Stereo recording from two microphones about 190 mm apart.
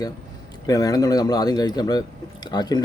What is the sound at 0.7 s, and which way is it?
Speech, 20° left (ahead or behind).